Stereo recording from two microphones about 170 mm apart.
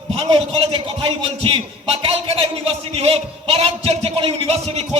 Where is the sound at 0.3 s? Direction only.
30° right (ahead or behind).